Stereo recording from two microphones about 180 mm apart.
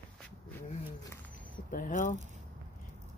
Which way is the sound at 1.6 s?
50° left (ahead or behind).